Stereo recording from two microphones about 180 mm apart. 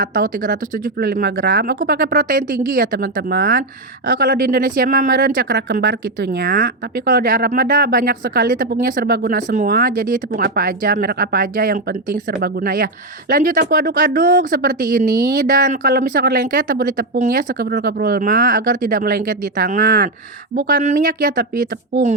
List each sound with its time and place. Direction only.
0.0 s speech: 50° right (ahead or behind); by 6.0 s 70° right (ahead or behind)
6.4 s speech: 55° right (ahead or behind)